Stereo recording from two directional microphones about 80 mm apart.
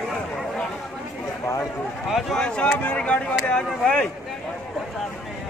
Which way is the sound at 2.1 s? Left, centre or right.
Centre.